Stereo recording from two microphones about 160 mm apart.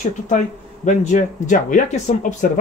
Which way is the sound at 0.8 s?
50° left (ahead or behind).